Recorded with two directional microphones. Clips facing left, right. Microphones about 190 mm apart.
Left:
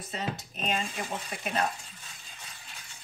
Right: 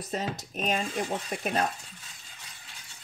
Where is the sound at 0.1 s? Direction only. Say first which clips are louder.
Right 3 dB; 40° right (ahead or behind).